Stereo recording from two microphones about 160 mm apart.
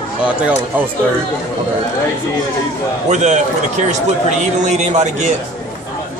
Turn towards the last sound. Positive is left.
turn(degrees=-45)  # may be behind; listen again after turning